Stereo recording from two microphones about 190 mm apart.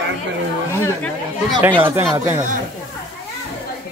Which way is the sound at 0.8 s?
5° left (ahead or behind).